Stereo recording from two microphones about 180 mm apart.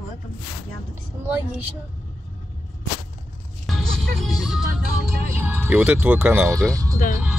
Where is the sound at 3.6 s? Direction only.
Centre (ahead or behind).